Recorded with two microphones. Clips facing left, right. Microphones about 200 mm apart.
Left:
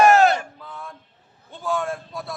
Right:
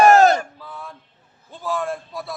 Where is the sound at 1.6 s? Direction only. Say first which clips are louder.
Even; centre (ahead or behind).